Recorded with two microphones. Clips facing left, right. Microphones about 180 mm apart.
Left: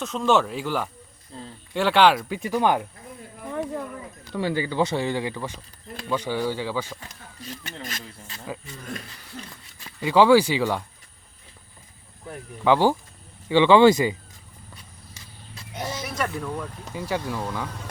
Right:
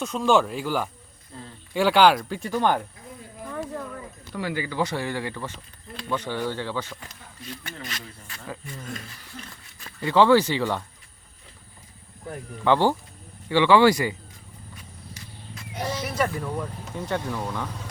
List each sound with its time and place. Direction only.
0.0 s speech: centre (ahead or behind)
4.4 s speech: 25° left (ahead or behind); by 7.0 s 10° left (ahead or behind)
7.8 s speech: 45° left (ahead or behind)
10.0 s speech: 10° left (ahead or behind)
12.6 s speech: 10° left (ahead or behind)
15.1 s vehicle: 25° left (ahead or behind)
16.0 s speech: 5° right (ahead or behind)
16.9 s speech: 5° left (ahead or behind)